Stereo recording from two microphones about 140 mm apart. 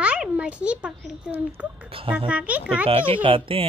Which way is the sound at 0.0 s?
10° right (ahead or behind).